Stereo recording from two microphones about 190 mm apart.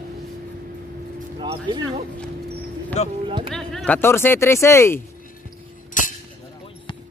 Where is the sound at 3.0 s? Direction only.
35° left (ahead or behind).